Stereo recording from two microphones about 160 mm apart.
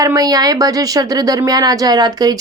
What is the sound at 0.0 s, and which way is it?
Speech, 20° right (ahead or behind).